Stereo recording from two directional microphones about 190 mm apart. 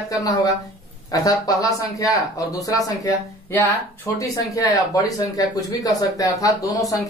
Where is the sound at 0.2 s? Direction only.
20° left (ahead or behind).